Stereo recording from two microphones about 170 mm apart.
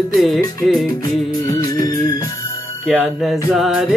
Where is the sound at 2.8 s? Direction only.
Centre (ahead or behind).